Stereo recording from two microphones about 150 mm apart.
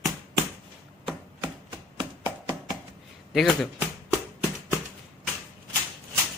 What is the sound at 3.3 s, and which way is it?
Speech, 5° left (ahead or behind).